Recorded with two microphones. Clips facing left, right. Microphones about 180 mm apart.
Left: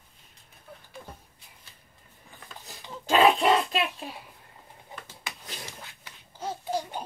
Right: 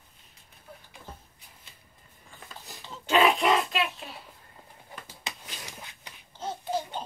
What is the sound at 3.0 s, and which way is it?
Oink, 35° left (ahead or behind).